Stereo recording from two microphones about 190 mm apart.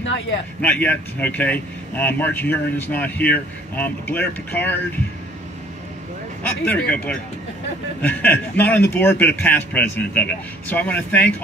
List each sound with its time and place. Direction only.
0.0 s a man's voice: 75° left (ahead or behind)
0.6 s speech: 10° left (ahead or behind)
6.4 s speech: 10° left (ahead or behind)